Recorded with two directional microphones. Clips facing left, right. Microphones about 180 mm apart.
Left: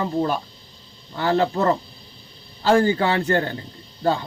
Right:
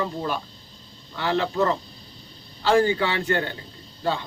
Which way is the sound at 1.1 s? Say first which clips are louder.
Left 4 dB; 40° left (ahead or behind).